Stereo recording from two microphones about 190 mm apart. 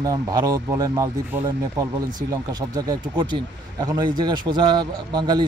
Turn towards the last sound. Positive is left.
turn(degrees=-20)  # may be behind; listen again after turning